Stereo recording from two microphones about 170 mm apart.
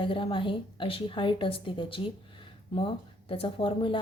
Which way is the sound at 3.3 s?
30° left (ahead or behind).